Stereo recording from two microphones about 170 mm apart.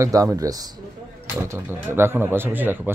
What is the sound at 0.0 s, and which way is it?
Speech, 20° right (ahead or behind).